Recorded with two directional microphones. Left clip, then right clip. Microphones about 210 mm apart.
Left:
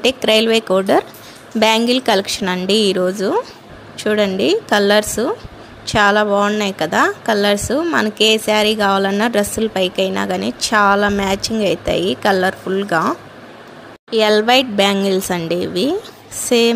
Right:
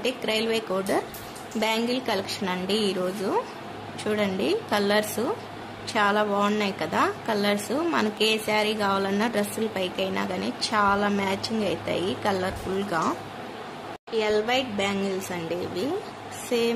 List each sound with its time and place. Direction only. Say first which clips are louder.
0.0 s a woman's voice: left 12 dB; 35° left (ahead or behind)
14.1 s a woman's voice: left 12 dB; 40° left (ahead or behind)